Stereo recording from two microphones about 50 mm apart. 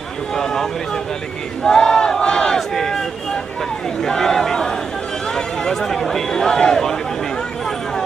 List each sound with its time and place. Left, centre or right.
0.4 s speech: centre
4.0 s speech: centre